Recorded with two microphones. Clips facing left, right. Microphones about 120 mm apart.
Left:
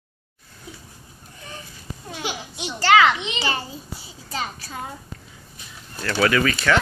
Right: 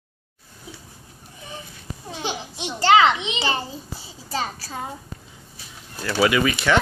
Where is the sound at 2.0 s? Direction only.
25° right (ahead or behind).